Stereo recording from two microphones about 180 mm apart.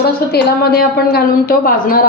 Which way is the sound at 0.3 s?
60° left (ahead or behind).